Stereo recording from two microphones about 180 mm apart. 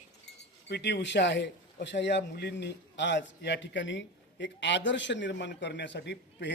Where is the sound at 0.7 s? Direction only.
70° left (ahead or behind).